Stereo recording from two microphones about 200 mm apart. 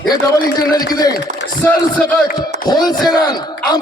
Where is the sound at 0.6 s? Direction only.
20° left (ahead or behind).